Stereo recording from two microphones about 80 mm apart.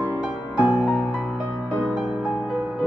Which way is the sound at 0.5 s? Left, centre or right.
Centre.